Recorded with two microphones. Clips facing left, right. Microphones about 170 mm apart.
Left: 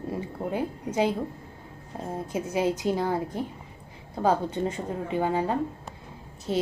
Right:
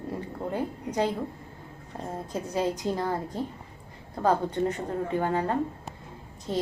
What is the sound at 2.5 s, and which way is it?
Speech, 20° left (ahead or behind).